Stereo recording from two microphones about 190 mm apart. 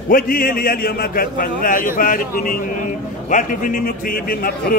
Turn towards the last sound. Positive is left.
turn(degrees=50)  # may be behind; listen again after turning